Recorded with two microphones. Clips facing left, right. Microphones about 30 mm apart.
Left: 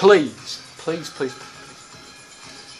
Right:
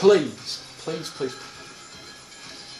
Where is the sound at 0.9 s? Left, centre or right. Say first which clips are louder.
Left 5 dB; left.